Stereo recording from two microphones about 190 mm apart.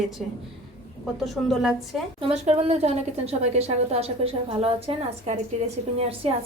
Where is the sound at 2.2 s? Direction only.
35° right (ahead or behind).